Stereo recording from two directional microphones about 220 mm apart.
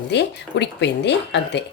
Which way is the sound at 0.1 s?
50° left (ahead or behind).